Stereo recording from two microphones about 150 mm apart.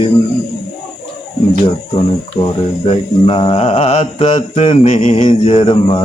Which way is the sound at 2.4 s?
35° left (ahead or behind).